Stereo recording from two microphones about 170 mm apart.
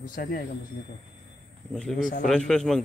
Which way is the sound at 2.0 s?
50° left (ahead or behind).